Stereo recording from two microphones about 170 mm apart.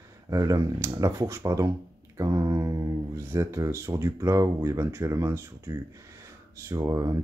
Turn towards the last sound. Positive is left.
turn(degrees=-20)  # may be behind; listen again after turning